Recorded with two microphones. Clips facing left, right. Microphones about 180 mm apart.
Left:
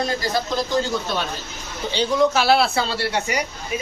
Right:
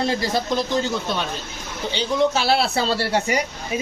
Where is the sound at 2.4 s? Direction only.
35° right (ahead or behind).